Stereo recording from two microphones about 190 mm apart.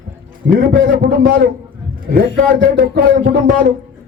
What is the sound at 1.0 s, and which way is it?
Speech, 50° right (ahead or behind).